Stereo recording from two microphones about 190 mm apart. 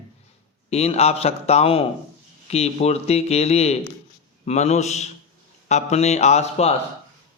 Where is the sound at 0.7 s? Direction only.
35° left (ahead or behind).